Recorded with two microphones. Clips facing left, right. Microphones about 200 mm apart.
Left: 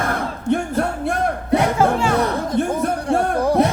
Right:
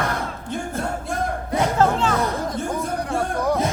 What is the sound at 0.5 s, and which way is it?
Music, 65° left (ahead or behind).